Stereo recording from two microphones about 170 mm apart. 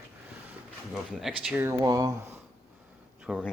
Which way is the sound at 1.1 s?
Centre (ahead or behind).